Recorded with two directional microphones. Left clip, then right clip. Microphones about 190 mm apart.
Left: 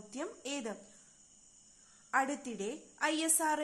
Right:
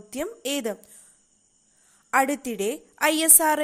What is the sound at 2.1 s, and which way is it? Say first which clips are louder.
A woman's voice: right 11 dB; 45° right (ahead or behind).